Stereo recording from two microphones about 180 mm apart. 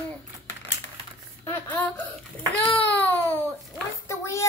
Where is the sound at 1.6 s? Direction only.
10° left (ahead or behind).